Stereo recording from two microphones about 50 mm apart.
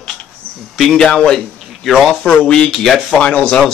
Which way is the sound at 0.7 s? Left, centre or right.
Centre.